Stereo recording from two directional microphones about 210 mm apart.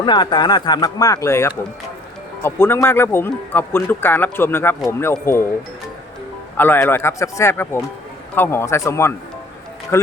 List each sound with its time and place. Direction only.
0.0 s speech: 20° left (ahead or behind)
6.6 s speech: 10° left (ahead or behind)